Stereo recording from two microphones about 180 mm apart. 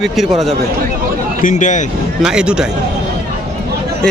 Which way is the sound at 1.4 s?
45° left (ahead or behind).